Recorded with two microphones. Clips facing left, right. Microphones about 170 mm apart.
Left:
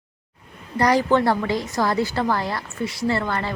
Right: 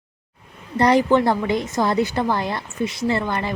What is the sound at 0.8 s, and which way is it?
A woman's voice, 20° right (ahead or behind).